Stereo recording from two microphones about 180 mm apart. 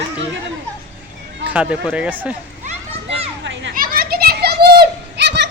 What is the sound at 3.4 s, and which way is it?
Children playing, 85° right.